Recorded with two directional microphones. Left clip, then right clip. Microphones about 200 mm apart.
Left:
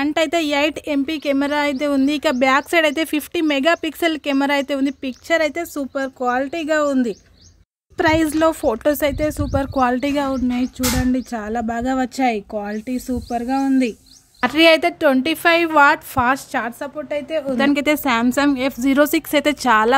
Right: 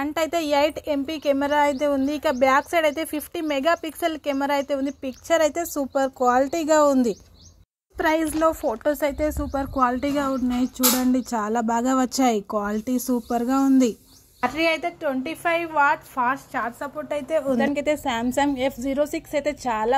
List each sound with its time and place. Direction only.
0.0 s a woman's voice: 25° left (ahead or behind)
5.3 s speech: 10° left (ahead or behind)
8.0 s speech: 30° left (ahead or behind)
10.5 s speech: 10° left (ahead or behind)
13.5 s speech: 60° right (ahead or behind)
14.5 s a woman's voice: 70° left (ahead or behind)
15.2 s a woman's voice: 50° left (ahead or behind)
17.1 s speech: 5° left (ahead or behind)
17.6 s speech: 35° left (ahead or behind)
19.1 s speech: 40° left (ahead or behind)